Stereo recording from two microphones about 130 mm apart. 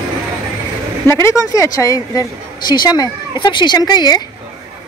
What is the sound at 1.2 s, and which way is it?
Speech, 25° left (ahead or behind).